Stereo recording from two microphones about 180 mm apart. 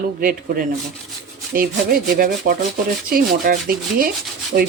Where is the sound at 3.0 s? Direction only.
55° right (ahead or behind).